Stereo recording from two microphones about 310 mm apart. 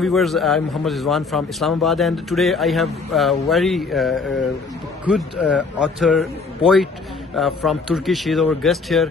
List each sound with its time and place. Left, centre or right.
0.0 s a man's voice: centre